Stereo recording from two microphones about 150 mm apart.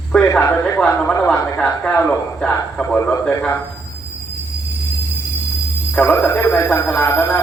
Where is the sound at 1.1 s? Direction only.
20° left (ahead or behind).